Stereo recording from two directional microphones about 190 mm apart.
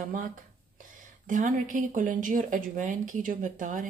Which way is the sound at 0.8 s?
45° right (ahead or behind).